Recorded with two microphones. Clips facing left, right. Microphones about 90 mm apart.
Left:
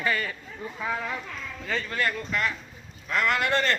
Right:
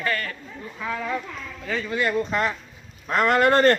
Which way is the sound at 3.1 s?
40° right (ahead or behind).